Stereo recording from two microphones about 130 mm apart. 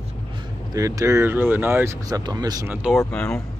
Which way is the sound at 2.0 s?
30° right (ahead or behind).